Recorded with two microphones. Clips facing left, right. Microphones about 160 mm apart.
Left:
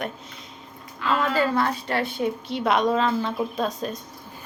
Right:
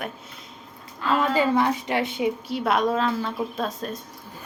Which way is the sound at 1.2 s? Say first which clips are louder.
Right 2 dB; 15° right (ahead or behind).